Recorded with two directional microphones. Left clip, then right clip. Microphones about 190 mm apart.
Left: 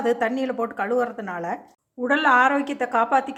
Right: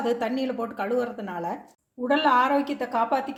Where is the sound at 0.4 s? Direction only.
10° left (ahead or behind).